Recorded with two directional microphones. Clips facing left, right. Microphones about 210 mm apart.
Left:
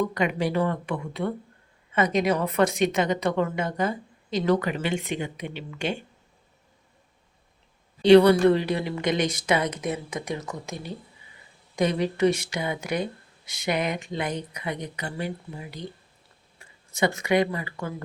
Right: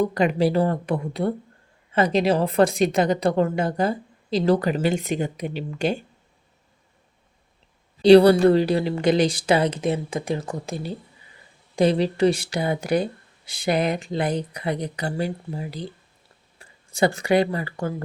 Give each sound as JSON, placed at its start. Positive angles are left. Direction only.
{"t": 0.0, "sound": "speech", "side_deg": -35}
{"t": 8.0, "sound": "speech", "side_deg": -35}